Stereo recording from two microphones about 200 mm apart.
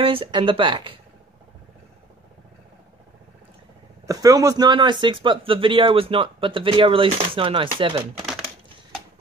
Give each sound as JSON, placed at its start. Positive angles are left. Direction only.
{"t": 0.0, "sound": "speech", "side_deg": -25}
{"t": 4.1, "sound": "speech", "side_deg": -15}